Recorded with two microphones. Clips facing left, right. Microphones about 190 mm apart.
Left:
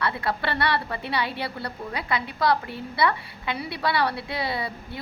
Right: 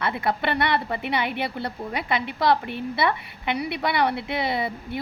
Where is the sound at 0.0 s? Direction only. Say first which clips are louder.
Right 2 dB; 20° right (ahead or behind).